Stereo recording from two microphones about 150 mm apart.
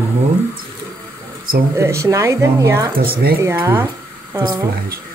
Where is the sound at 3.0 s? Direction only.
90° right.